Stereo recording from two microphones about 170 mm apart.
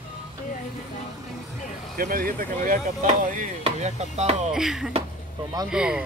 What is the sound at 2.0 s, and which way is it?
Speech, 60° right (ahead or behind).